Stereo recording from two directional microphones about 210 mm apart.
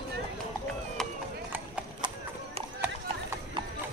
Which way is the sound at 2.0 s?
20° right (ahead or behind).